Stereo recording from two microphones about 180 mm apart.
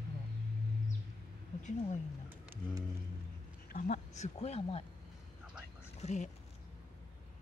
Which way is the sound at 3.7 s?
45° left (ahead or behind).